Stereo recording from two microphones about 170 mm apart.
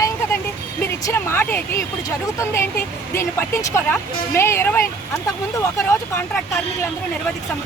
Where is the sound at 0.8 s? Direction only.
15° left (ahead or behind).